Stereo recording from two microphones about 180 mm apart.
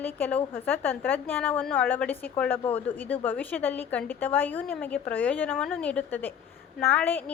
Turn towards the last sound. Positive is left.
turn(degrees=10)  # may be behind; listen again after turning